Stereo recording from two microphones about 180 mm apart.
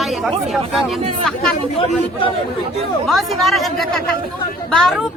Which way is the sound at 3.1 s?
Centre (ahead or behind).